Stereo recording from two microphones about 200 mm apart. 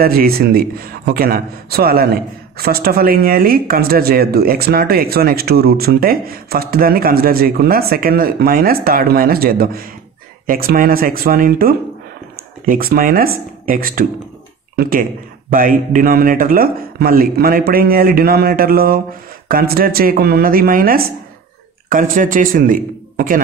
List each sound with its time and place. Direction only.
0.0 s a man's voice: 50° right (ahead or behind)